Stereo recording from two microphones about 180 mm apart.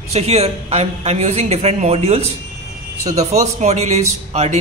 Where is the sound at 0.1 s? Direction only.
35° right (ahead or behind).